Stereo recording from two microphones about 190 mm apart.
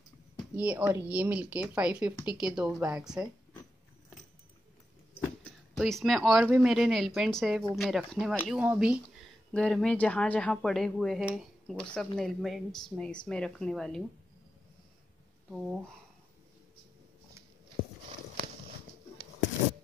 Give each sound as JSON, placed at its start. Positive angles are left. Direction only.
{"t": 0.6, "sound": "speech", "side_deg": -5}
{"t": 5.4, "sound": "speech", "side_deg": 0}